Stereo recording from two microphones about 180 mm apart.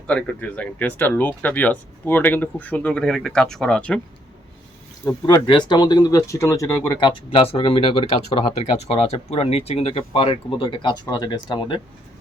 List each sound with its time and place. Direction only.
0.1 s speech: 10° left (ahead or behind)
5.2 s speech: 25° left (ahead or behind)